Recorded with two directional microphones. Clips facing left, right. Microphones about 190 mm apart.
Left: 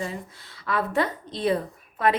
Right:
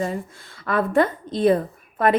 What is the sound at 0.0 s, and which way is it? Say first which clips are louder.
A woman's voice: right 6 dB; 50° right (ahead or behind).